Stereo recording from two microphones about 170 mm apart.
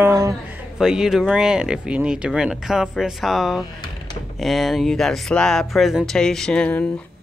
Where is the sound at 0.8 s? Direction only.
5° right (ahead or behind).